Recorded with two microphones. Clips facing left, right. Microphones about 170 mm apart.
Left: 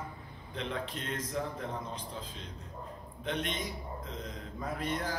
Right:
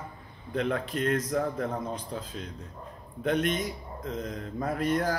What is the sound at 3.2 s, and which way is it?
Speech, 50° right (ahead or behind).